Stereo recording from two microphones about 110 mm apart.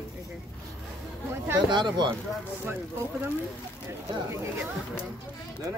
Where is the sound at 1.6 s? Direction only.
45° right (ahead or behind).